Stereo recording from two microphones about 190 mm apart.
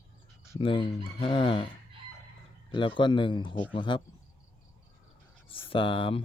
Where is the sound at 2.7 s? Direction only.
25° left (ahead or behind).